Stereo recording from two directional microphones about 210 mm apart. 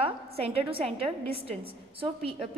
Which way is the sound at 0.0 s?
30° right (ahead or behind).